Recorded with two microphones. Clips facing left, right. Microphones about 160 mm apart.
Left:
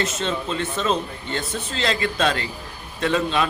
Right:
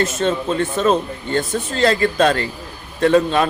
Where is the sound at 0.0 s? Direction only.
50° right (ahead or behind).